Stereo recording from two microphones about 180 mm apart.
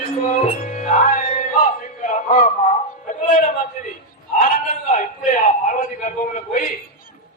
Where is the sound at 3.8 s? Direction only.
50° left (ahead or behind).